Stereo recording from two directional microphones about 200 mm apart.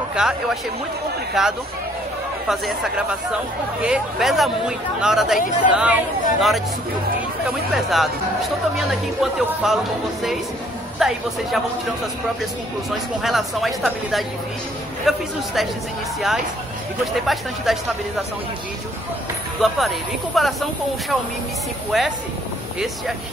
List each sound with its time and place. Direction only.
0.1 s speech: 5° right (ahead or behind)
9.2 s speech: centre (ahead or behind)
11.0 s speech: centre (ahead or behind)
12.9 s speech: centre (ahead or behind)
17.0 s speech: centre (ahead or behind)
19.6 s speech: centre (ahead or behind)
21.9 s speech: centre (ahead or behind)